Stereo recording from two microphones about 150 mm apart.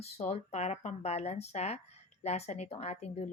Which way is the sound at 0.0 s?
45° left (ahead or behind).